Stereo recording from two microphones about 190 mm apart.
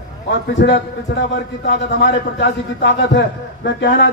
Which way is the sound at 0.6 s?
60° left (ahead or behind).